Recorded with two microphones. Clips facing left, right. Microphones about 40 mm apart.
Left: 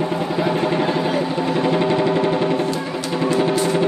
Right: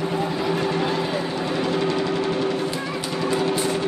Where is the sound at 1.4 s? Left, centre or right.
Left.